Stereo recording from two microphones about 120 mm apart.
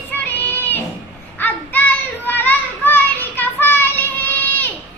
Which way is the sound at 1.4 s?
15° left (ahead or behind).